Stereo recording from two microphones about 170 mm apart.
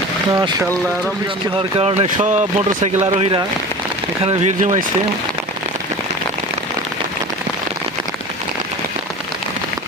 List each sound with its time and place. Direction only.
0.3 s speech: 20° right (ahead or behind)
1.5 s speech: 35° right (ahead or behind)